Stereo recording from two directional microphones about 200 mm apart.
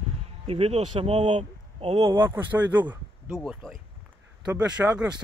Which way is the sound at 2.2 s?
10° right (ahead or behind).